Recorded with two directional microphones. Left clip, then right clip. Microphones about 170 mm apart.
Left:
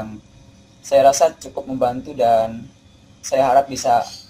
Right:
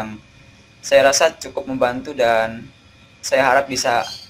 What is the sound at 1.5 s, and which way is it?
Speech, 20° right (ahead or behind).